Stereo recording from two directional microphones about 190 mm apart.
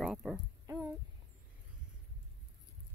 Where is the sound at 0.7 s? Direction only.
10° right (ahead or behind).